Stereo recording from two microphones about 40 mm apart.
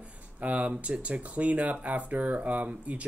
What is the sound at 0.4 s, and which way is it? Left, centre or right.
Speech, right.